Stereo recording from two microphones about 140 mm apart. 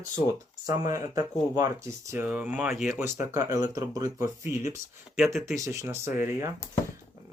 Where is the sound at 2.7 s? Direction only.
Centre (ahead or behind).